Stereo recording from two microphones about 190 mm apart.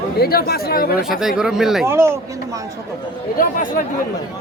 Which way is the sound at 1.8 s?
15° right (ahead or behind).